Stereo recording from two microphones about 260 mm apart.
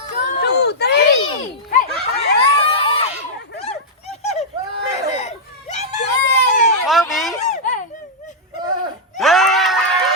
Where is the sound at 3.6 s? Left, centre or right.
Left.